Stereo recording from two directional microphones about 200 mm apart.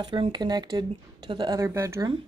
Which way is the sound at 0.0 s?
25° right (ahead or behind).